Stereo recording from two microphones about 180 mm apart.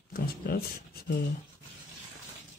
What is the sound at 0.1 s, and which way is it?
Speech, 55° left (ahead or behind).